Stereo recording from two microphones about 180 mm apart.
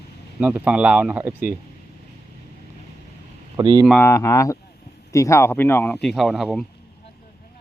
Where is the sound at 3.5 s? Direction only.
20° right (ahead or behind).